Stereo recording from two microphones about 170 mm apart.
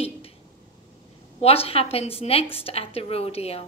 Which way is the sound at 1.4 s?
35° left (ahead or behind).